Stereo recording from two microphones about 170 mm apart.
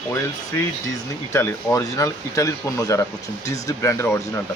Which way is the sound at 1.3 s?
20° left (ahead or behind).